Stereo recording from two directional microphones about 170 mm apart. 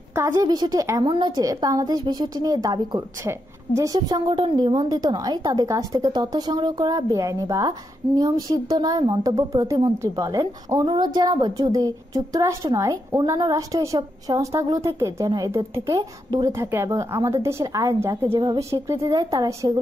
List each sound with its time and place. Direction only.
0.1 s a woman's voice: 15° right (ahead or behind)